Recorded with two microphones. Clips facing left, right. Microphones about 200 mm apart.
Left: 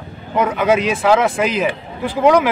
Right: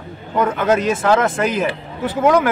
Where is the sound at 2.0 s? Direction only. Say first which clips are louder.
Left 2 dB; centre (ahead or behind).